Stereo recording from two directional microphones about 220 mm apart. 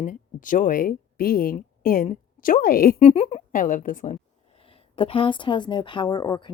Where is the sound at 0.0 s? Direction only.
35° left (ahead or behind).